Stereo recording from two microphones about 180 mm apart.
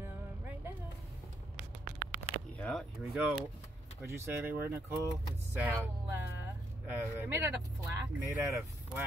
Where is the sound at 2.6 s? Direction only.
5° left (ahead or behind); by 4.8 s 10° right (ahead or behind).